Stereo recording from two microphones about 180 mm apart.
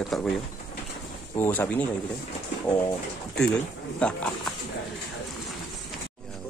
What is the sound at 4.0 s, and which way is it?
Speech, 5° left (ahead or behind).